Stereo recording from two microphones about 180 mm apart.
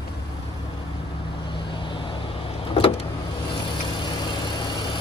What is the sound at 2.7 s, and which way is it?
Vehicle, 30° left (ahead or behind).